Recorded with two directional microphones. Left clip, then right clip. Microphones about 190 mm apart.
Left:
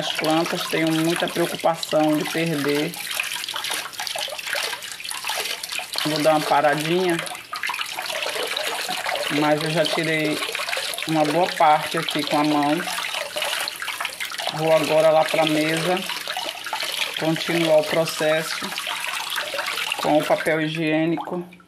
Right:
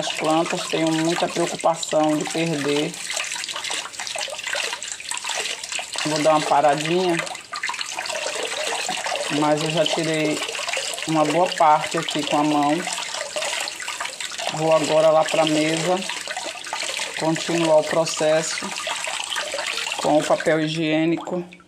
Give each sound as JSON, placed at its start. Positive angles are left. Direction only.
{"t": 0.4, "sound": "speech", "side_deg": 10}
{"t": 6.1, "sound": "speech", "side_deg": 15}
{"t": 9.4, "sound": "speech", "side_deg": 0}
{"t": 14.6, "sound": "speech", "side_deg": -5}
{"t": 17.2, "sound": "speech", "side_deg": -5}
{"t": 20.0, "sound": "speech", "side_deg": -5}